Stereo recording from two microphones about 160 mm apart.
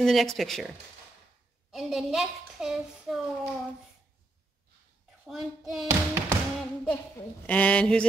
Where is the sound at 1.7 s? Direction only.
Centre (ahead or behind).